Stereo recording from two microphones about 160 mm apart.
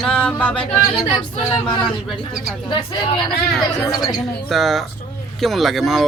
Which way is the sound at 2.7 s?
30° left (ahead or behind).